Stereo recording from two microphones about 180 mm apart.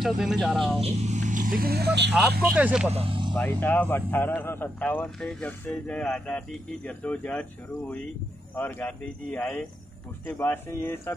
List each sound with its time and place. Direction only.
0.0 s speech: centre (ahead or behind)
0.7 s speech: 35° right (ahead or behind); by 2.1 s 70° right (ahead or behind)
2.5 s speech: 5° right (ahead or behind)
2.9 s speech: 30° right (ahead or behind)
3.3 s speech: 10° left (ahead or behind)